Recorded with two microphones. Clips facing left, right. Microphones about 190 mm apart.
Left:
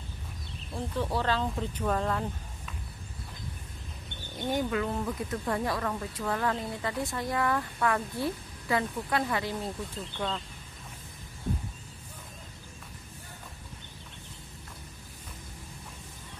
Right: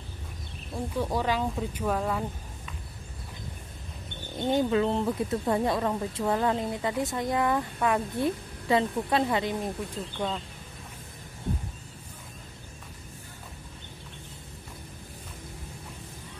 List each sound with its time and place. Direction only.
0.7 s speech: 10° right (ahead or behind)
4.4 s speech: 25° right (ahead or behind); by 10.4 s 10° right (ahead or behind)